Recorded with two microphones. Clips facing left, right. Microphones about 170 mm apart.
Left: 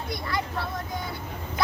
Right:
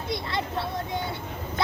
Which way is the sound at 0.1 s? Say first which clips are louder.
Right 1 dB; 25° right (ahead or behind).